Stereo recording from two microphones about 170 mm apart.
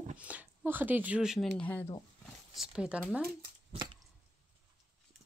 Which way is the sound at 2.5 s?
5° right (ahead or behind).